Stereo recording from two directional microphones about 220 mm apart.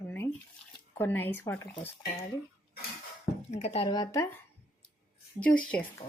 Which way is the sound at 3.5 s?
25° left (ahead or behind).